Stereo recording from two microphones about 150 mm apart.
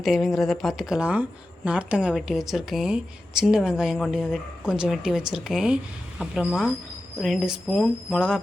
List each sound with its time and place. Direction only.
0.0 s speech: centre (ahead or behind)